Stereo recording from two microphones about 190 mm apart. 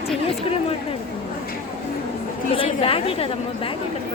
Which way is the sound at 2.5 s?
30° left (ahead or behind).